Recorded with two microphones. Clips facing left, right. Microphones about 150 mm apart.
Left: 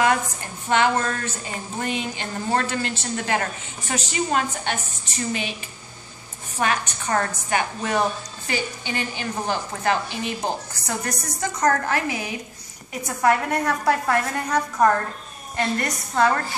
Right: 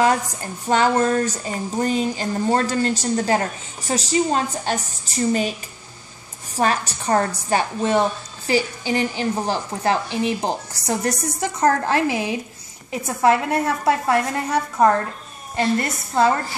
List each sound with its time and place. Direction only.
0.7 s a woman's voice: 35° right (ahead or behind)
6.5 s a woman's voice: 35° right (ahead or behind)